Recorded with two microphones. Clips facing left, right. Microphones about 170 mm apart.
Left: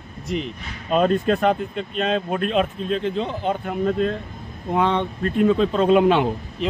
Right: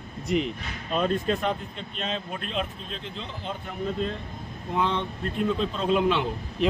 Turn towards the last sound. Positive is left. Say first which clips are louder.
# right 1 dB
turn(degrees=0)  # may be behind; listen again after turning